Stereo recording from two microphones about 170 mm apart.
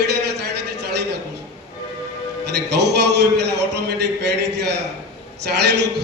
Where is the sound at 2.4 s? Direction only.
80° right.